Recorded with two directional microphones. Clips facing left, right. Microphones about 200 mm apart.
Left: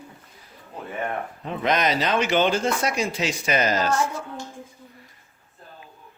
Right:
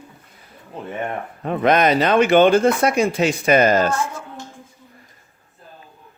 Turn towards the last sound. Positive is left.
turn(degrees=-55)  # may be behind; listen again after turning